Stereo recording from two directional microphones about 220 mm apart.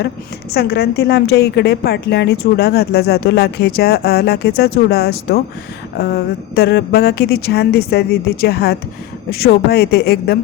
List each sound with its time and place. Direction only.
0.5 s a woman's voice: 45° left (ahead or behind)